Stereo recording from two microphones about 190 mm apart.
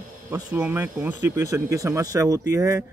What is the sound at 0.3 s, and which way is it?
Speech, 15° right (ahead or behind).